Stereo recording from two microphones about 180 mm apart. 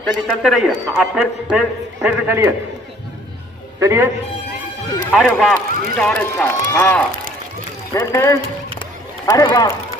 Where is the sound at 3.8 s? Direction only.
15° right (ahead or behind).